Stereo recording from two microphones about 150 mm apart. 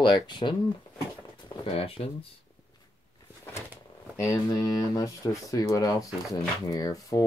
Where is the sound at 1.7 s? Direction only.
40° left (ahead or behind).